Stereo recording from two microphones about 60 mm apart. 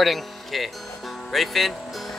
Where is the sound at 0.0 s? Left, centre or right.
Centre.